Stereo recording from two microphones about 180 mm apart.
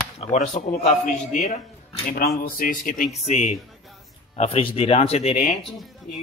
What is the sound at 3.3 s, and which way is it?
Speech, 40° left (ahead or behind).